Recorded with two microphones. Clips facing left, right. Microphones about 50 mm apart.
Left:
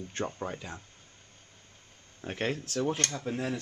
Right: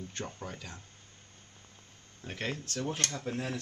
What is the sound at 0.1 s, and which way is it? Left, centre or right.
Speech, left.